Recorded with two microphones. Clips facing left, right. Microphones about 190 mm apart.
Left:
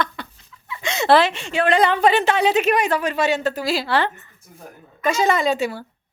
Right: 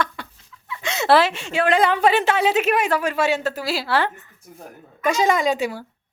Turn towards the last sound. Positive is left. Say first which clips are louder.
# left 1 dB
turn(degrees=-15)  # may be behind; listen again after turning